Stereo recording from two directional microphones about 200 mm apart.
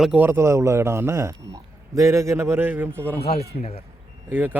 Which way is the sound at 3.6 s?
30° left (ahead or behind).